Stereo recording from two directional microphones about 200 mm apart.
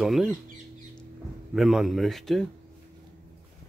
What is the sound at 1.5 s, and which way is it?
Speech, centre (ahead or behind).